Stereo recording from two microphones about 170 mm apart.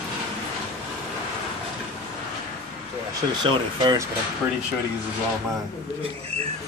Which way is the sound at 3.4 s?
25° right (ahead or behind).